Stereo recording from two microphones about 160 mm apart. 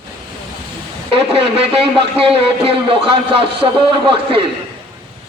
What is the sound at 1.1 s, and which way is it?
Speech, 35° right (ahead or behind).